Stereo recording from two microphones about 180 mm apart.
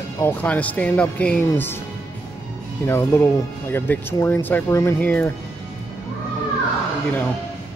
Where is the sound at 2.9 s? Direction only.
15° left (ahead or behind).